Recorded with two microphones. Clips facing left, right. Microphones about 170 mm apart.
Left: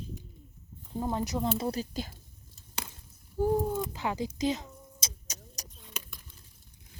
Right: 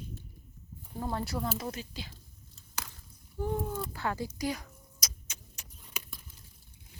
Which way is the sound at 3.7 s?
20° left (ahead or behind).